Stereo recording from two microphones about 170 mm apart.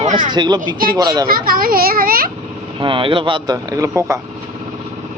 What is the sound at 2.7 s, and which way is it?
Speech, 30° right (ahead or behind).